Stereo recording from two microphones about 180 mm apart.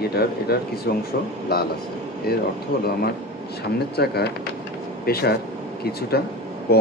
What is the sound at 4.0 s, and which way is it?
Speech, 65° left (ahead or behind).